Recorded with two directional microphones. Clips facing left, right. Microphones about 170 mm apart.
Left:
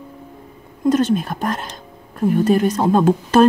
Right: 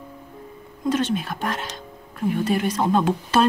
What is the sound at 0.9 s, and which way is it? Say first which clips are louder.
Speech: left 6 dB; 40° left (ahead or behind).